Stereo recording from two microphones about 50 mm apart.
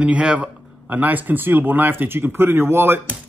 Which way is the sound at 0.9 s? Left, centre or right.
Right.